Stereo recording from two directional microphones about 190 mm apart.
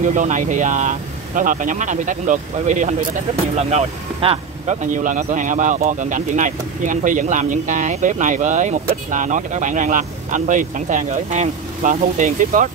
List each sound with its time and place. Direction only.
0.0 s speech: 40° right (ahead or behind)
4.9 s speech: 45° right (ahead or behind)